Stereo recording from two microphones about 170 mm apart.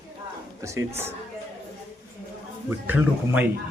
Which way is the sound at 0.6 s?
15° right (ahead or behind).